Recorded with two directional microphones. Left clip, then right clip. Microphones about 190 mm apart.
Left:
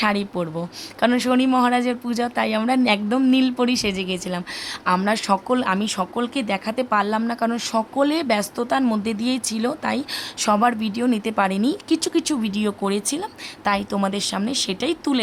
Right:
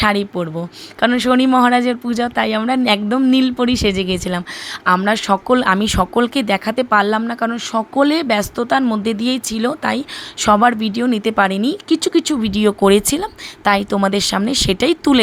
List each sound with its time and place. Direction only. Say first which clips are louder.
0.0 s speech: right 5 dB; 15° right (ahead or behind)